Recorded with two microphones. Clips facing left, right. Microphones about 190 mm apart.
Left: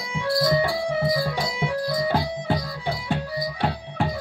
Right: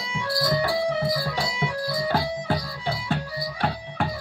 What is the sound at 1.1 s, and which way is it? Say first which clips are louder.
Music: left 2 dB; 20° left (ahead or behind).